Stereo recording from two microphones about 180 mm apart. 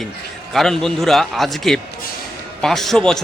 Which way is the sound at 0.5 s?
Centre (ahead or behind).